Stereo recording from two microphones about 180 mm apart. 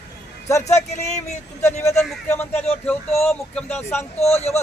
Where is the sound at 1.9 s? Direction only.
Centre (ahead or behind).